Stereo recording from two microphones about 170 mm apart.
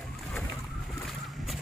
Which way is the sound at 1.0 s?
Centre (ahead or behind).